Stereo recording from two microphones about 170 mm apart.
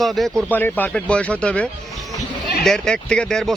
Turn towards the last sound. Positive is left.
turn(degrees=5)  # may be behind; listen again after turning